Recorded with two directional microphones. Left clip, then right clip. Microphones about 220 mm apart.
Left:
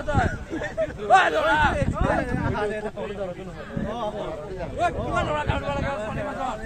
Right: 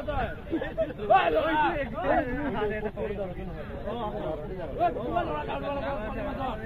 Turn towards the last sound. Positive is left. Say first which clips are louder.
# left 5 dB
turn(degrees=30)  # may be behind; listen again after turning